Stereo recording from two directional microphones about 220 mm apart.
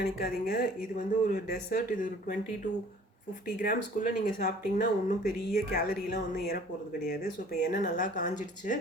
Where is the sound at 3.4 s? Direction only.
40° left (ahead or behind).